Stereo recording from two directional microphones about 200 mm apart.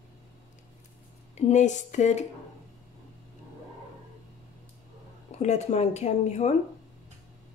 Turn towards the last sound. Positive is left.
turn(degrees=35)  # may be behind; listen again after turning